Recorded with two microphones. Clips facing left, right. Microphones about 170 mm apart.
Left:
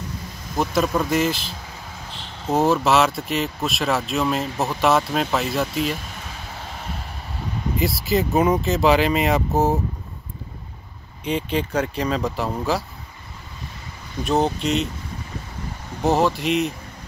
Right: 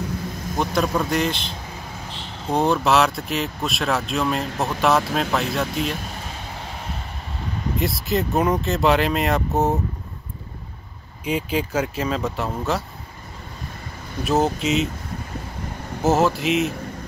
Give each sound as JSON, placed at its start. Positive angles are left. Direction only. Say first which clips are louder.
{"t": 0.6, "sound": "speech", "louder": "left 1 dB", "side_deg": 0}
{"t": 7.8, "sound": "speech", "louder": "left 2 dB", "side_deg": 0}
{"t": 11.2, "sound": "speech", "louder": "even", "side_deg": -5}
{"t": 14.2, "sound": "speech", "louder": "even", "side_deg": 0}
{"t": 16.0, "sound": "speech", "louder": "right 1 dB", "side_deg": 0}